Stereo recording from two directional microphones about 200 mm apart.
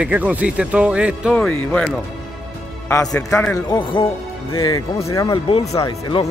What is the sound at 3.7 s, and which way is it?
Speech, 25° left (ahead or behind).